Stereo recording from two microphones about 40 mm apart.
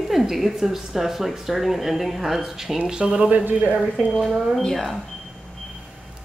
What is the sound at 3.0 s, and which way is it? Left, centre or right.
Speech, right.